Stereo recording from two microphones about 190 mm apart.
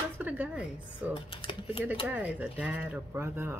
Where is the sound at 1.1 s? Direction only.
25° left (ahead or behind).